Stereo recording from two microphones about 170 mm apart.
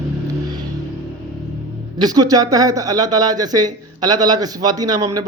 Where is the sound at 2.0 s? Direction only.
20° right (ahead or behind).